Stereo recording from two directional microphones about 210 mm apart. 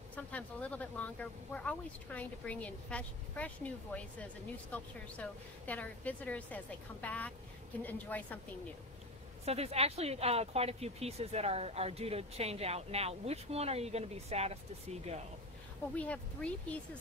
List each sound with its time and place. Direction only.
0.1 s speech: 5° left (ahead or behind)
9.4 s speech: 30° right (ahead or behind)
16.0 s speech: 5° left (ahead or behind)